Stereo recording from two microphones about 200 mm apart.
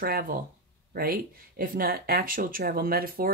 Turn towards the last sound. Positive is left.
turn(degrees=-45)  # may be behind; listen again after turning